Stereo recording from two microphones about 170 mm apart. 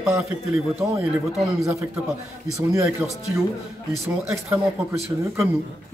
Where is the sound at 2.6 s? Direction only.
20° right (ahead or behind).